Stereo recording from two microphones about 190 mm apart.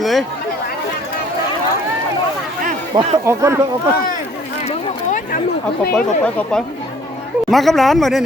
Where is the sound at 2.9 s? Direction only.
25° right (ahead or behind).